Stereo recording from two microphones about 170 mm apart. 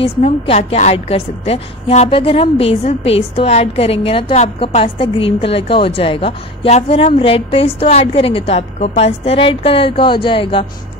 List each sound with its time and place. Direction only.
0.0 s a woman's voice: 35° left (ahead or behind)